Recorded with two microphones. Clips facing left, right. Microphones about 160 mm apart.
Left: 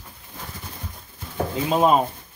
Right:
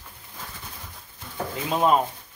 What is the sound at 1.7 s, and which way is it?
Speech, 20° left (ahead or behind).